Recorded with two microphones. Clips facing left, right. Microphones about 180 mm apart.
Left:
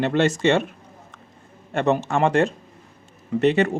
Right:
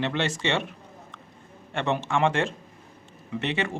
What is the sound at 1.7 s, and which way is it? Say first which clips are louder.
Speech: left 5 dB; 40° left (ahead or behind).